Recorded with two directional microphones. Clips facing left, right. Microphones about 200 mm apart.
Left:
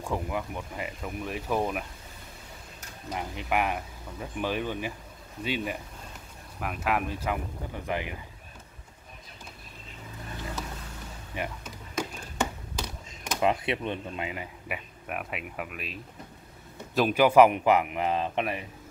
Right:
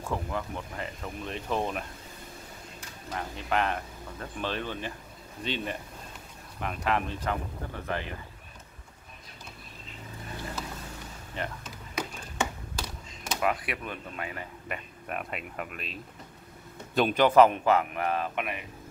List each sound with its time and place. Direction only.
0.0 s speech: 10° left (ahead or behind)
3.1 s speech: 15° left (ahead or behind)
11.3 s music: 10° left (ahead or behind)
13.4 s speech: 25° left (ahead or behind)
18.3 s speech: 35° left (ahead or behind)